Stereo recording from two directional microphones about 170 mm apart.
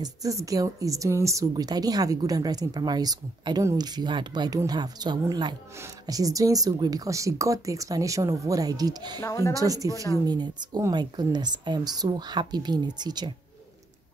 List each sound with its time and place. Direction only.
0.0 s speech: 20° right (ahead or behind)
9.2 s speech: 15° left (ahead or behind)
9.5 s speech: 20° right (ahead or behind)